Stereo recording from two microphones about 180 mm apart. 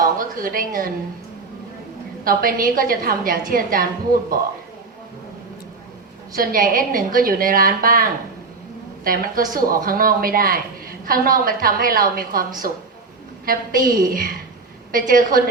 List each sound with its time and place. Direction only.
0.0 s a woman's voice: 50° right (ahead or behind)
2.2 s speech: 50° right (ahead or behind)
6.3 s speech: 50° right (ahead or behind)